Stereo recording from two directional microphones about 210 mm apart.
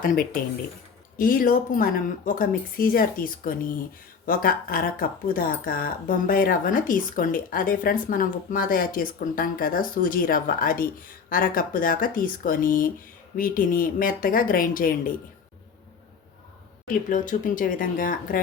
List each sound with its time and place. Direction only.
1.2 s speech: 40° left (ahead or behind)
16.8 s speech: 40° left (ahead or behind)